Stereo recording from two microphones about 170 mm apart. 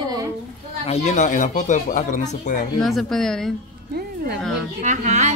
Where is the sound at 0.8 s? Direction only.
40° left (ahead or behind).